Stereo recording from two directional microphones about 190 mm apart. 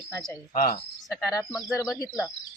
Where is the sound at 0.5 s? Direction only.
50° left (ahead or behind).